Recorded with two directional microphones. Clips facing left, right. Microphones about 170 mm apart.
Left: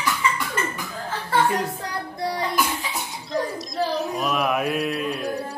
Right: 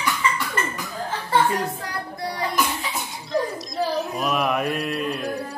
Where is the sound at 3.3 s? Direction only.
Centre (ahead or behind).